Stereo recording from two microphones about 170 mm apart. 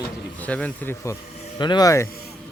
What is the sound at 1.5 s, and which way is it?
Speech, 25° left (ahead or behind).